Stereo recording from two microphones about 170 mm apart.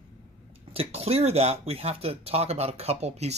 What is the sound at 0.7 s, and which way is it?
Speech, 35° right (ahead or behind).